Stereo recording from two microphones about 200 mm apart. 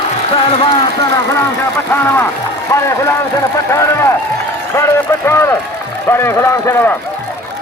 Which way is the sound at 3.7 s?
15° left (ahead or behind).